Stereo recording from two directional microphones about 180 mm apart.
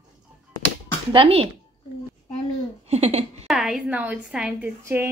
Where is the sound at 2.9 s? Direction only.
35° right (ahead or behind).